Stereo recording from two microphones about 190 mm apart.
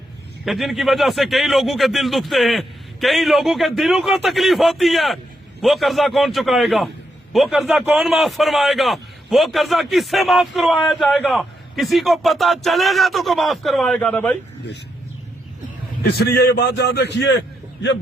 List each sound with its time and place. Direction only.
0.4 s a man's voice: centre (ahead or behind)
16.0 s a man's voice: 55° left (ahead or behind)